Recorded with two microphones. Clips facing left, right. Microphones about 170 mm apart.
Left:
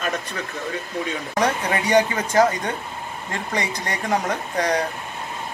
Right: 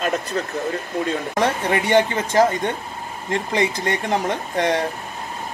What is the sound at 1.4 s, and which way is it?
Speech, 25° right (ahead or behind).